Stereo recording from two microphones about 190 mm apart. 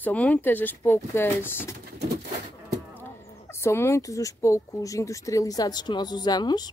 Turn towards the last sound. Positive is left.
turn(degrees=20)  # may be behind; listen again after turning